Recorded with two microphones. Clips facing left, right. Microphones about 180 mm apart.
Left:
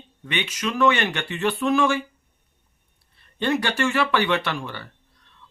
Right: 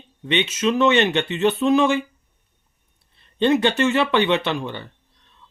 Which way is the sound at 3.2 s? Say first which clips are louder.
Right 6 dB; 20° right (ahead or behind).